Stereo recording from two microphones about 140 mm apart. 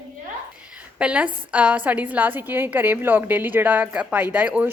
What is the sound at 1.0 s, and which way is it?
A woman's voice, 10° right (ahead or behind).